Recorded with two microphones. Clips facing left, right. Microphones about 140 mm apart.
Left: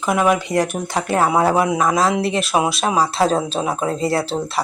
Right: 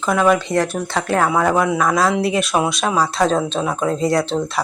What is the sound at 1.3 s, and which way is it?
Speech, 30° left (ahead or behind).